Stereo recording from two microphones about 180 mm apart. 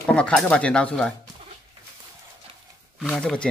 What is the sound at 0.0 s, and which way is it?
A man's voice, 5° left (ahead or behind).